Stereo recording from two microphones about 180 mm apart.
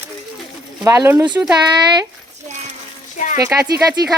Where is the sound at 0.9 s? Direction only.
15° right (ahead or behind).